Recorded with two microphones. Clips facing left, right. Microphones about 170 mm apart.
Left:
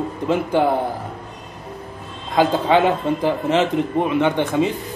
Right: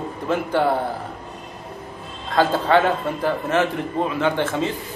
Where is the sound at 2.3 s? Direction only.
15° left (ahead or behind).